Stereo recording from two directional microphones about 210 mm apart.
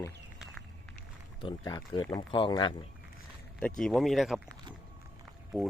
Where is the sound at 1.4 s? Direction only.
20° left (ahead or behind).